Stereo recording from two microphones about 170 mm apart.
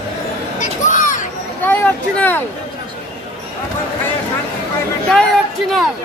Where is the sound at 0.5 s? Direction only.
50° left (ahead or behind).